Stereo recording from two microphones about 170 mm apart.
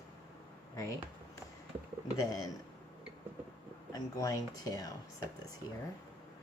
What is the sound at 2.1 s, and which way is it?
Speech, 20° left (ahead or behind).